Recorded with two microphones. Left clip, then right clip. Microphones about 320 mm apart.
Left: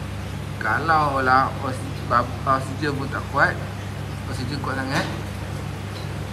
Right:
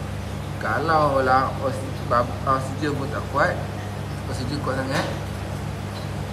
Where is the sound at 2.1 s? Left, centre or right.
Left.